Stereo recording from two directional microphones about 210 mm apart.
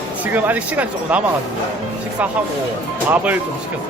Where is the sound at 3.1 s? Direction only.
10° right (ahead or behind).